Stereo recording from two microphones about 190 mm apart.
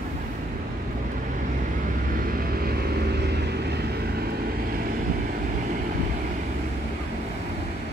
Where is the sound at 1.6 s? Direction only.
45° right (ahead or behind).